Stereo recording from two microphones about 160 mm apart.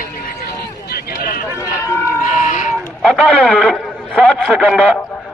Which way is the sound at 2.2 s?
50° left (ahead or behind).